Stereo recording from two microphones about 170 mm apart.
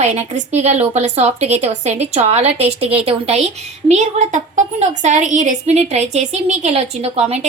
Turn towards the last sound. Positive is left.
turn(degrees=-35)  # may be behind; listen again after turning